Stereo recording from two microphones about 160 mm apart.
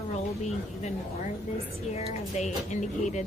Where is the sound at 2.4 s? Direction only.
50° left (ahead or behind).